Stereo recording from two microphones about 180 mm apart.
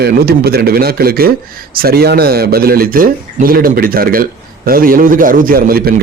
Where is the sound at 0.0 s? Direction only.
60° right (ahead or behind).